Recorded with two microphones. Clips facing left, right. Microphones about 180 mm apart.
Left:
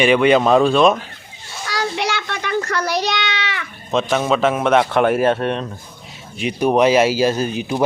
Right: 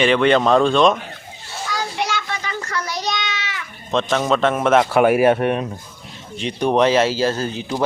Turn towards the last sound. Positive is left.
turn(degrees=15)  # may be behind; listen again after turning